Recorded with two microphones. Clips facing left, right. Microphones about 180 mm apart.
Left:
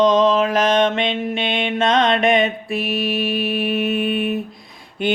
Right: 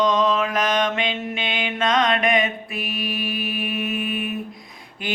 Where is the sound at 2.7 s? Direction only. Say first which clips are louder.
Left 9 dB; 75° left (ahead or behind).